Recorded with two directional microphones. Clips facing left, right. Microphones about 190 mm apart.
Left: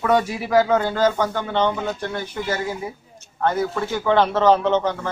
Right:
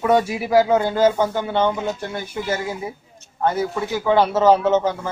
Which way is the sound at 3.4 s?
15° right (ahead or behind).